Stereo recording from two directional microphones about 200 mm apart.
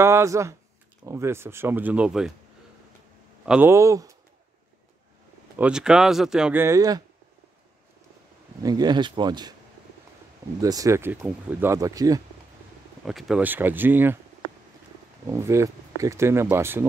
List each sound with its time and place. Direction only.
0.0 s speech: 15° right (ahead or behind)
3.4 s speech: 10° right (ahead or behind)
5.6 s speech: 5° right (ahead or behind)
8.6 s speech: 20° right (ahead or behind)
10.6 s speech: 15° right (ahead or behind)
13.0 s speech: 5° right (ahead or behind)
15.2 s speech: 15° right (ahead or behind)